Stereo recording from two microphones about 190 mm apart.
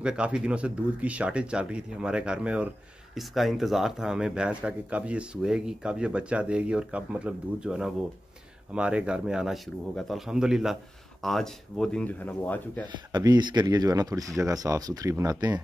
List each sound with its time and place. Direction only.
0.0 s speech: 5° right (ahead or behind)
12.9 s speech: 20° right (ahead or behind)